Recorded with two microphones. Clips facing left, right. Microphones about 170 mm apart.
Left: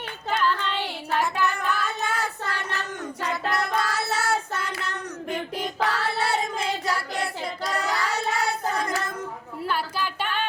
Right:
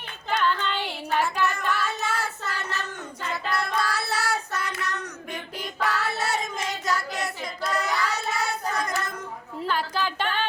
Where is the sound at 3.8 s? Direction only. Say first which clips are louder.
Left 1 dB; 25° left (ahead or behind).